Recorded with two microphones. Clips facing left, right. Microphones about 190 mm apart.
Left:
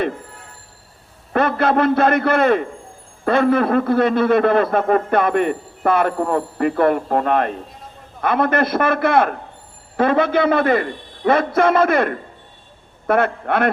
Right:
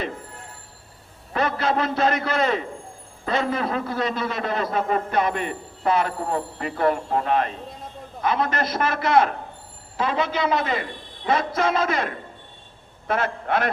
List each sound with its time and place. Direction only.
1.3 s a man's voice: 55° left (ahead or behind)